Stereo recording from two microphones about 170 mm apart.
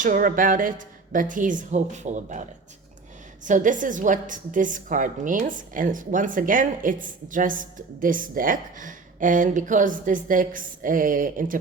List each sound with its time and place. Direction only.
0.0 s a woman's voice: 50° right (ahead or behind)